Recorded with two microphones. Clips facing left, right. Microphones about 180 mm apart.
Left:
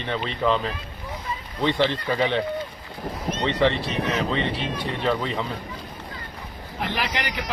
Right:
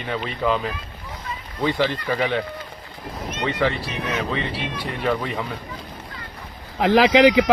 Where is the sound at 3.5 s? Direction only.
5° right (ahead or behind).